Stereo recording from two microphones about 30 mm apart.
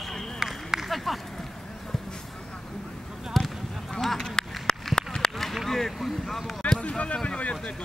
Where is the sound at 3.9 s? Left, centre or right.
Centre.